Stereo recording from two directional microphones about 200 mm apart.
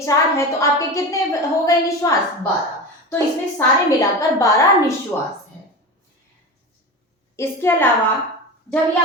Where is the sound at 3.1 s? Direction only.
15° left (ahead or behind).